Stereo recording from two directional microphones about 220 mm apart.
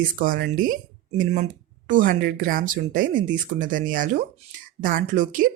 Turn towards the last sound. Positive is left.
turn(degrees=-35)  # may be behind; listen again after turning